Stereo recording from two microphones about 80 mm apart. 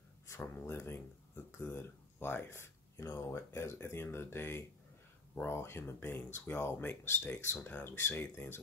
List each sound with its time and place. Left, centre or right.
0.4 s speech: left